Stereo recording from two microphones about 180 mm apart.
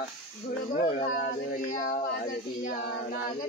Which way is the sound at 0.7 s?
40° left (ahead or behind).